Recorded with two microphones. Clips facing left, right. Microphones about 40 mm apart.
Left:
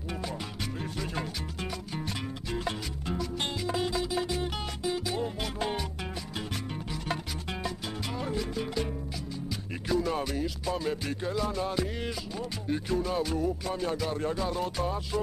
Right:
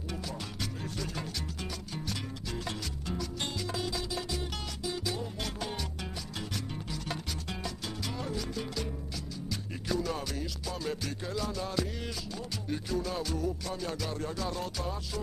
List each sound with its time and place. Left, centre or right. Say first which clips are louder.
0.9 s music: left 3 dB; left
7.6 s music: left 3 dB; centre
9.8 s music: left 4 dB; centre